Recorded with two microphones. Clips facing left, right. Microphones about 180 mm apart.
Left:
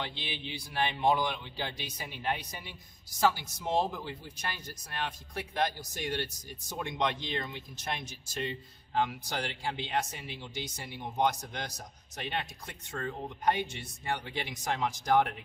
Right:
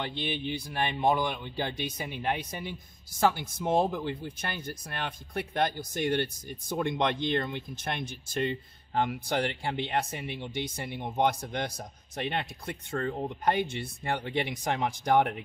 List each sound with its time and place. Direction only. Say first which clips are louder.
0.1 s a man's voice: right 8 dB; 50° right (ahead or behind)